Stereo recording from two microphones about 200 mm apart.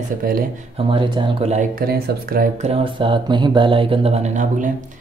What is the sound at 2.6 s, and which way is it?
Speech, 30° right (ahead or behind).